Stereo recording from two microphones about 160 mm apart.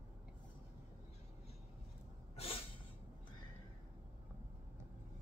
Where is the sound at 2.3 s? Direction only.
40° left (ahead or behind).